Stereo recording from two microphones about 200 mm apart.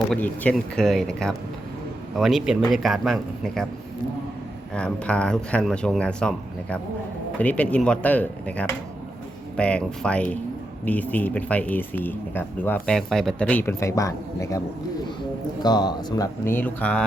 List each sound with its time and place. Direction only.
0.1 s speech: 5° left (ahead or behind)
4.7 s speech: 5° left (ahead or behind)
15.6 s speech: 20° left (ahead or behind)